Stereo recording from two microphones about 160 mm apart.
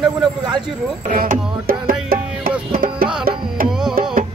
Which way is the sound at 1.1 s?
60° right (ahead or behind).